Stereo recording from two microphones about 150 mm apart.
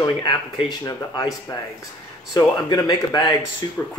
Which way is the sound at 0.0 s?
30° left (ahead or behind).